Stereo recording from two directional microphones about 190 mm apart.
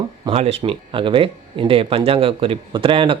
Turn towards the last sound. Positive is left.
turn(degrees=-25)  # may be behind; listen again after turning